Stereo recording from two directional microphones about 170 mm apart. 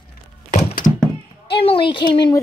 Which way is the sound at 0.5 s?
55° left (ahead or behind).